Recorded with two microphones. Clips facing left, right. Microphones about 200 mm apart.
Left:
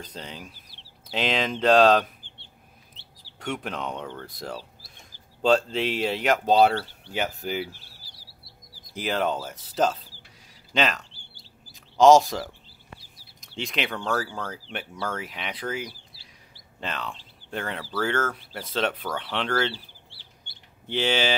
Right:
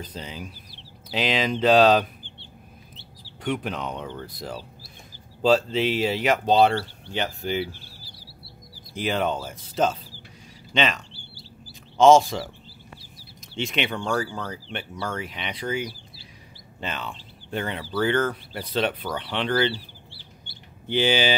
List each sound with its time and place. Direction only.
0.0 s speech: 5° right (ahead or behind)
3.3 s speech: centre (ahead or behind)
8.9 s speech: centre (ahead or behind)
20.4 s mouse: 5° right (ahead or behind)